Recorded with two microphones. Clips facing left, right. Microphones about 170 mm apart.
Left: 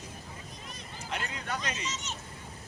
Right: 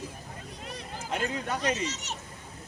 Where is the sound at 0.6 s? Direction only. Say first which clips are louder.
Right 6 dB; 65° right (ahead or behind).